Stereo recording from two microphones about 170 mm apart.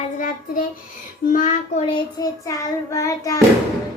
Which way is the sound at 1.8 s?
25° left (ahead or behind).